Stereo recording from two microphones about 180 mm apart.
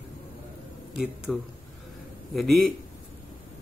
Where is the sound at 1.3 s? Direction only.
5° left (ahead or behind).